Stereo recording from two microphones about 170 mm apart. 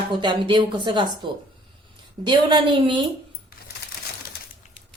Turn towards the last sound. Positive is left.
turn(degrees=-30)  # may be behind; listen again after turning